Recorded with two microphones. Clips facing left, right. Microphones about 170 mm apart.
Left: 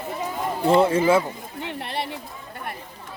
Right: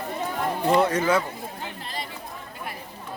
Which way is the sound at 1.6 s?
70° left (ahead or behind).